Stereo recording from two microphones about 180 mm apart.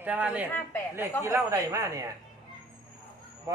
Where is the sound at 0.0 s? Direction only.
10° right (ahead or behind).